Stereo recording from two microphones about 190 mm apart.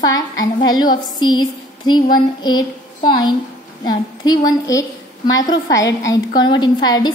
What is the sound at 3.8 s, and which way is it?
A woman's voice, 20° left (ahead or behind).